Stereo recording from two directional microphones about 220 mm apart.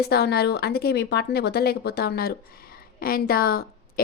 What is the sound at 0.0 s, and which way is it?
A woman's voice, 45° left (ahead or behind).